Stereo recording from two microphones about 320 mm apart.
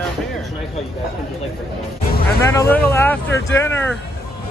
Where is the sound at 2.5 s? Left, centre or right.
Centre.